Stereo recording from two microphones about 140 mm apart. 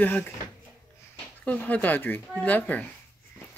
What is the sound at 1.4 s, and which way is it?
Speech, 10° left (ahead or behind).